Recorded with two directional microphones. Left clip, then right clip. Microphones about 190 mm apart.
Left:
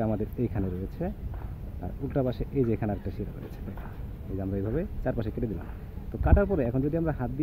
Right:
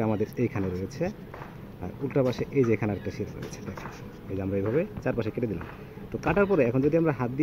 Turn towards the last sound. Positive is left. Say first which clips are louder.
# right 5 dB
turn(degrees=50)  # may be behind; listen again after turning